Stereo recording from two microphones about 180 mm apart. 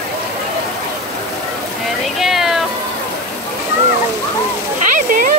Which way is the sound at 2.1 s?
Centre (ahead or behind).